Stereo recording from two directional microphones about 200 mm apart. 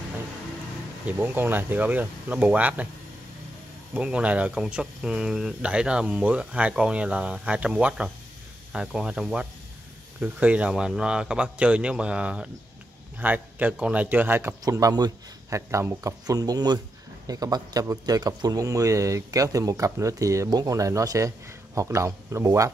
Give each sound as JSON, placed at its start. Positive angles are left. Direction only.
{"t": 1.0, "sound": "a man's voice", "side_deg": -10}
{"t": 3.9, "sound": "a man's voice", "side_deg": -5}